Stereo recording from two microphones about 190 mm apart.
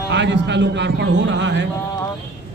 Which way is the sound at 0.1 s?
65° right (ahead or behind).